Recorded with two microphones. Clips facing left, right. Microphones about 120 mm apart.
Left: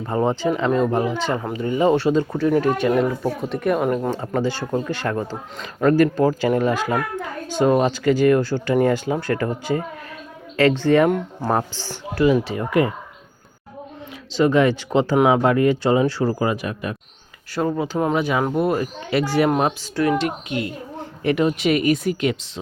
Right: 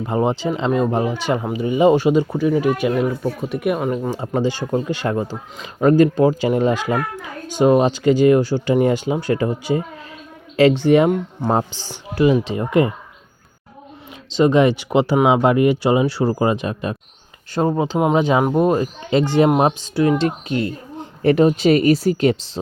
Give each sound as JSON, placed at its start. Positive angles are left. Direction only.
{"t": 0.0, "sound": "speech", "side_deg": -15}
{"t": 2.3, "sound": "speech", "side_deg": -5}
{"t": 4.1, "sound": "speech", "side_deg": -15}
{"t": 14.3, "sound": "speech", "side_deg": -20}
{"t": 16.3, "sound": "speech", "side_deg": -25}